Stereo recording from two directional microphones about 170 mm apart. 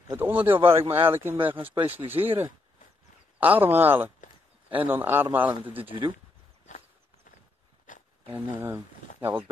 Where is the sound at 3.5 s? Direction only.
10° right (ahead or behind).